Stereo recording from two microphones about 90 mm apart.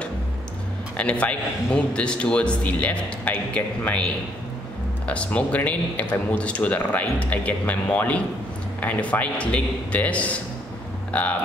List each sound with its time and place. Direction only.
0.9 s speech: 15° left (ahead or behind)